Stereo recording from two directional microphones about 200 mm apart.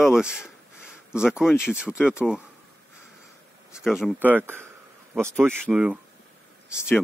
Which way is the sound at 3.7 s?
Centre (ahead or behind).